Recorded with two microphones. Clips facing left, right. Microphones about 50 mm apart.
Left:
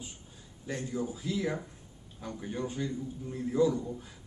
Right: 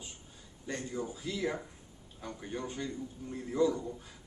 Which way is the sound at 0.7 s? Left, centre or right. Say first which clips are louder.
Left 3 dB; centre.